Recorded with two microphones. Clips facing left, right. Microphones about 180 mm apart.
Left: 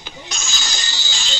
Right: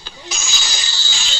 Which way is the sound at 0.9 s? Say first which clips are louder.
Left 1 dB; 20° left (ahead or behind).